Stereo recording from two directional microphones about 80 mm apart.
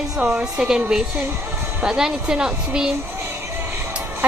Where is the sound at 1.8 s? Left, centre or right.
Centre.